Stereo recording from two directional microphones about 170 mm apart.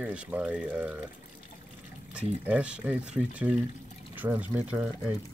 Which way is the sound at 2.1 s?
10° right (ahead or behind).